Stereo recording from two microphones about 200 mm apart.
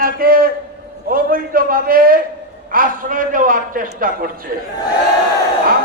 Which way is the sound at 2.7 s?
45° right (ahead or behind).